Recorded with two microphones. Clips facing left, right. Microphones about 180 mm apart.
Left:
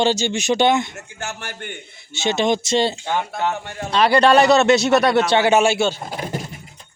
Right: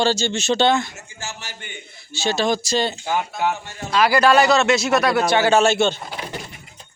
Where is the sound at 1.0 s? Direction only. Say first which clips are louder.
Left 4 dB; 60° left (ahead or behind).